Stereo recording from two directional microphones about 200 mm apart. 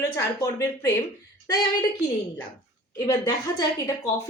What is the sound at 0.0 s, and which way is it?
Speech, 15° left (ahead or behind).